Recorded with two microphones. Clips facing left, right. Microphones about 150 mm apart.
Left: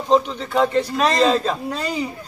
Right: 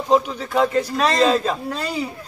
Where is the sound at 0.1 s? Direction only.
5° right (ahead or behind).